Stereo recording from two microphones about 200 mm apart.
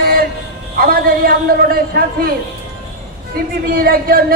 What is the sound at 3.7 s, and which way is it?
Speech, 50° right (ahead or behind).